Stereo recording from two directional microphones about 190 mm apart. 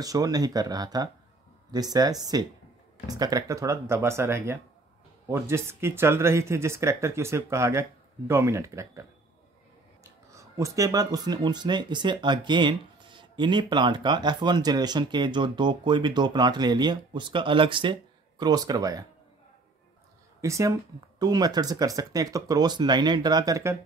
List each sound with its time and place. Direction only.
0.0 s speech: 20° right (ahead or behind)
10.3 s speech: 15° right (ahead or behind)
20.3 s speech: 15° right (ahead or behind)